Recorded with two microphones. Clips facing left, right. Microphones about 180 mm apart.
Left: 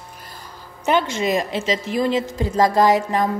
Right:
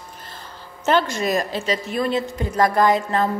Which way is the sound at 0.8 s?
15° left (ahead or behind).